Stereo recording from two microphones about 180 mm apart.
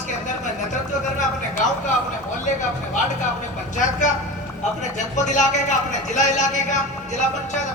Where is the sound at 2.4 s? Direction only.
45° left (ahead or behind).